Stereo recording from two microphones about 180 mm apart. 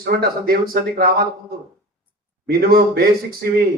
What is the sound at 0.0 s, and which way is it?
A man's voice, 60° right (ahead or behind).